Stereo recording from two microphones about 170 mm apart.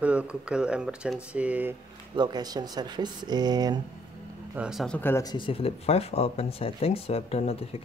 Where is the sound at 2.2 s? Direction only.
25° right (ahead or behind).